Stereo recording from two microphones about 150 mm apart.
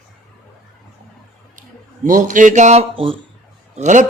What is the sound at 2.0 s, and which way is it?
Speech, 60° right (ahead or behind).